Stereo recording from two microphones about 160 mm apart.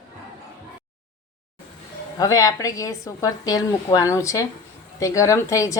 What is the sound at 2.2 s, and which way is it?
A woman's voice, 20° left (ahead or behind).